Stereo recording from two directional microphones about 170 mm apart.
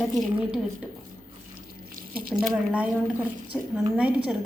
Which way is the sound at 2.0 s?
55° right (ahead or behind).